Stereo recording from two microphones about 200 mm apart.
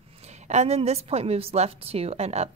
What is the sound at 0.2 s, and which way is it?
A woman's voice, 35° right (ahead or behind).